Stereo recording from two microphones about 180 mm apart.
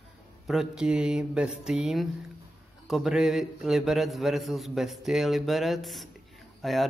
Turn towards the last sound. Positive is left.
turn(degrees=0)  # may be behind; listen again after turning